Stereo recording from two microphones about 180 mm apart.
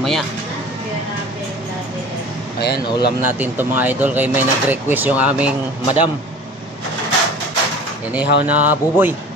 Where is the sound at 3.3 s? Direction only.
10° right (ahead or behind).